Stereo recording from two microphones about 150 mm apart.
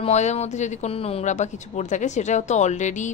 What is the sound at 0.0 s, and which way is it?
A woman's voice, 50° left (ahead or behind).